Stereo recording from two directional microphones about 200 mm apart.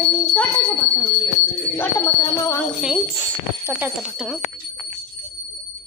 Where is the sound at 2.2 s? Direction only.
15° left (ahead or behind).